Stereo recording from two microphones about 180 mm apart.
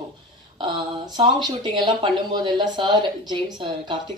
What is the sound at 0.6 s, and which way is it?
Speech, 25° right (ahead or behind).